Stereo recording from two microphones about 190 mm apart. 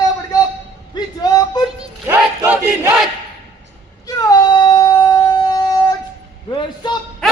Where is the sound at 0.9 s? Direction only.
20° left (ahead or behind).